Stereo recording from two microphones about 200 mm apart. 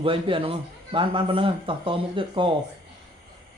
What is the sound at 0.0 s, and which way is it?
A man's voice, 25° right (ahead or behind).